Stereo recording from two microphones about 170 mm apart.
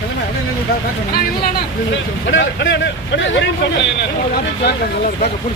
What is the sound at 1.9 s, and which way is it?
Speech, 90° left.